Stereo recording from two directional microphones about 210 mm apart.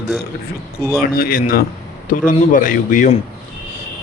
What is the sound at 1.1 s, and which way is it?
A man's voice, 45° left (ahead or behind).